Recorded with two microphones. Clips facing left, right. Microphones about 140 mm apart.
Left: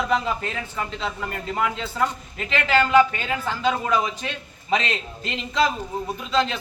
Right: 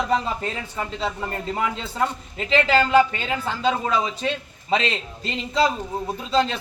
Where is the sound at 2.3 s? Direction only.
30° right (ahead or behind).